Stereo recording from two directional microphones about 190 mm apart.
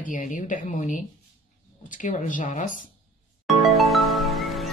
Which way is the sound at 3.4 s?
Centre (ahead or behind).